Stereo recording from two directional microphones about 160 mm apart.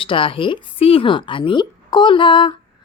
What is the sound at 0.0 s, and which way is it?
Speech, 35° left (ahead or behind).